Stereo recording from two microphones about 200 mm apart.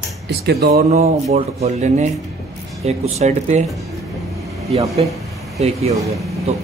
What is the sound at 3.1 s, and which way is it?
Speech, 35° right (ahead or behind).